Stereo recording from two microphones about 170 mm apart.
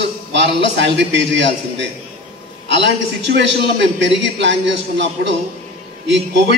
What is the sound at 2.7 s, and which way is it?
A man's voice, 90° right.